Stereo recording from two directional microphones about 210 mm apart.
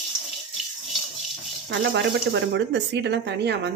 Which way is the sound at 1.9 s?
55° right (ahead or behind).